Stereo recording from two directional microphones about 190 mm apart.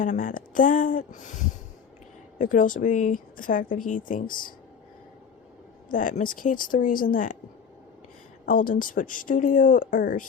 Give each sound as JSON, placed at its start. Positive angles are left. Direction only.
{"t": 0.0, "sound": "speech", "side_deg": 45}
{"t": 5.9, "sound": "speech", "side_deg": 45}
{"t": 8.4, "sound": "speech", "side_deg": 45}